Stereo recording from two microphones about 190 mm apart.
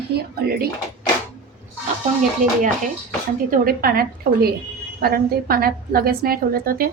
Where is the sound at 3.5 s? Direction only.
50° right (ahead or behind).